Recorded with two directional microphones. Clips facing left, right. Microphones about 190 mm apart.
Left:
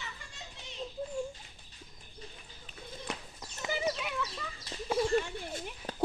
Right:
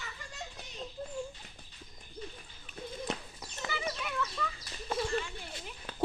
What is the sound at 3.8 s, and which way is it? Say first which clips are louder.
Fowl: left 2 dB; 10° left (ahead or behind).